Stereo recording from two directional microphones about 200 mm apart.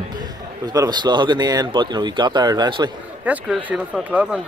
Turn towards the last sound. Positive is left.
turn(degrees=-5)  # may be behind; listen again after turning